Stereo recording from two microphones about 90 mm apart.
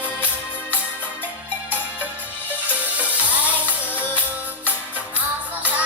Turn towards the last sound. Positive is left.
turn(degrees=-20)  # may be behind; listen again after turning